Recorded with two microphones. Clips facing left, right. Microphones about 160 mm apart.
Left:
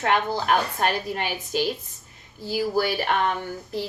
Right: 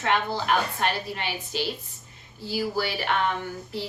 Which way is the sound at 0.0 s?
45° left (ahead or behind).